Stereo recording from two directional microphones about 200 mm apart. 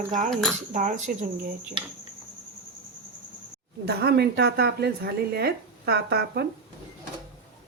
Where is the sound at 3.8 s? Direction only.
55° right (ahead or behind).